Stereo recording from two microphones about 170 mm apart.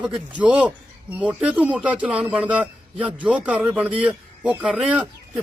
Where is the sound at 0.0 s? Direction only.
5° right (ahead or behind).